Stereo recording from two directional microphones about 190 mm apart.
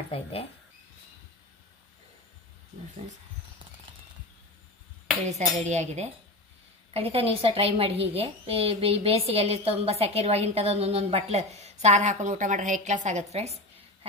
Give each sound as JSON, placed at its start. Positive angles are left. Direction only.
{"t": 0.1, "sound": "speech", "side_deg": 30}
{"t": 5.6, "sound": "a woman's voice", "side_deg": -35}